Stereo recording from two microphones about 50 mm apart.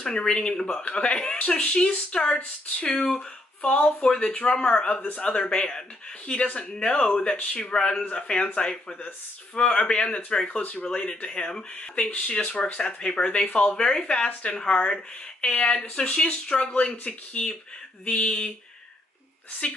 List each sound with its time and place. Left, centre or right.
0.0 s speech: centre
10.6 s speech: left
19.6 s speech: left